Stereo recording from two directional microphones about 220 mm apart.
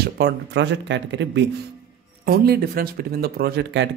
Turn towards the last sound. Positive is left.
turn(degrees=-50)  # may be behind; listen again after turning